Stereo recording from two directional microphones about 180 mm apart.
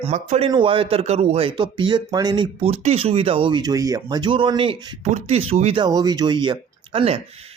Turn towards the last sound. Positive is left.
turn(degrees=-30)  # may be behind; listen again after turning